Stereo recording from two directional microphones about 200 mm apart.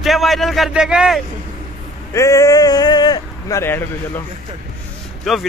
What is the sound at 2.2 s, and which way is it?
Speech, 15° left (ahead or behind).